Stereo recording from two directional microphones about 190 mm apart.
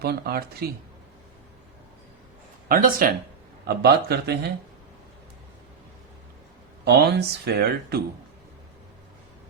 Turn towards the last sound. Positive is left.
turn(degrees=-55)  # may be behind; listen again after turning